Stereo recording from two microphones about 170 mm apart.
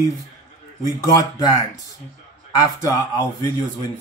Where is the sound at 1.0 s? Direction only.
20° left (ahead or behind).